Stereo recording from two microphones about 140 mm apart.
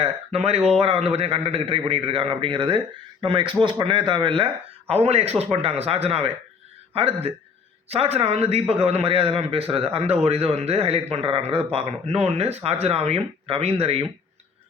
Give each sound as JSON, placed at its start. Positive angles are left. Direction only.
{"t": 0.0, "sound": "a man's voice", "side_deg": -45}
{"t": 4.9, "sound": "a man's voice", "side_deg": -50}